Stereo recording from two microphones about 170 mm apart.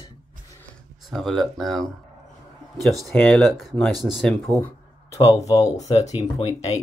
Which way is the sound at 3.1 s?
5° left (ahead or behind).